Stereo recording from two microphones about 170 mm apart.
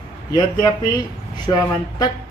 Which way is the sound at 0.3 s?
25° left (ahead or behind).